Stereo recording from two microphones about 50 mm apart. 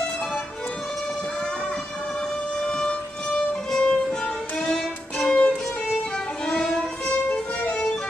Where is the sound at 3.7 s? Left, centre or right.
Centre.